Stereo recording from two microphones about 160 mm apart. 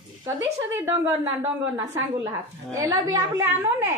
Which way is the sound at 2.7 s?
15° right (ahead or behind).